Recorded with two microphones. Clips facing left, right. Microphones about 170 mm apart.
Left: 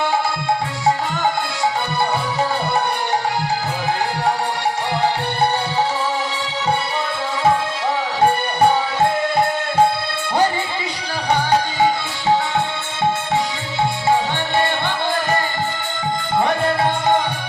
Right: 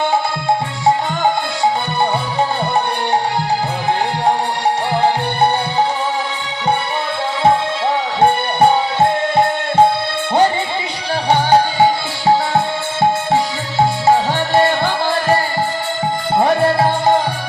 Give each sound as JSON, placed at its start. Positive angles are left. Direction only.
{"t": 11.3, "sound": "music", "side_deg": -30}
{"t": 14.3, "sound": "music", "side_deg": -40}
{"t": 16.4, "sound": "music", "side_deg": -35}